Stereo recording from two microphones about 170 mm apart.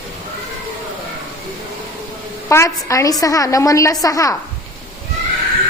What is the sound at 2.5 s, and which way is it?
A woman's voice, 20° left (ahead or behind).